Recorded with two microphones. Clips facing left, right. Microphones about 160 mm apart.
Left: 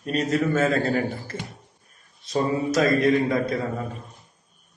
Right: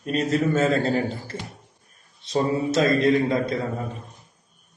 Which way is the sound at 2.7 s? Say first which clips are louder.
Even; 25° right (ahead or behind).